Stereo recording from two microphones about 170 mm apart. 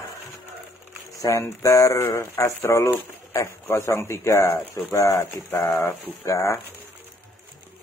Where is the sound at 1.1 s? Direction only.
20° left (ahead or behind).